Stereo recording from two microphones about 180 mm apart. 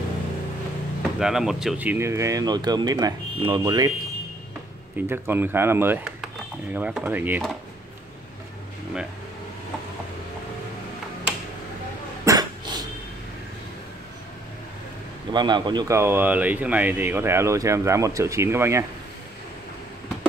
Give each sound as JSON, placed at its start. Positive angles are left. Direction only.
{"t": 1.2, "sound": "speech", "side_deg": 0}
{"t": 5.0, "sound": "speech", "side_deg": -10}
{"t": 12.3, "sound": "cough", "side_deg": -20}
{"t": 15.3, "sound": "speech", "side_deg": -25}